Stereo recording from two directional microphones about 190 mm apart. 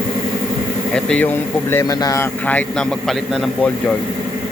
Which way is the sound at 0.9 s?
5° left (ahead or behind).